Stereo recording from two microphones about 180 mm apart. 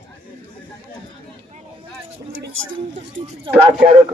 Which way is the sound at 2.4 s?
85° right.